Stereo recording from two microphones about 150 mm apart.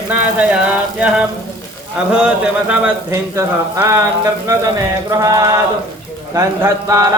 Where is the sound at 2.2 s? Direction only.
5° right (ahead or behind).